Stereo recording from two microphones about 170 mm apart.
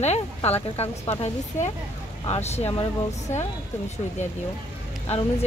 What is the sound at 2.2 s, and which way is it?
Speech, 35° left (ahead or behind).